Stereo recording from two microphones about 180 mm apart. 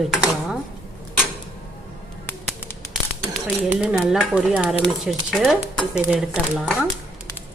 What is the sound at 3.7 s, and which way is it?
Speech, 5° right (ahead or behind).